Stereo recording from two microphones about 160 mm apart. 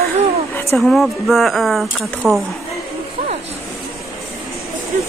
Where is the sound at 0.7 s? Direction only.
Centre (ahead or behind).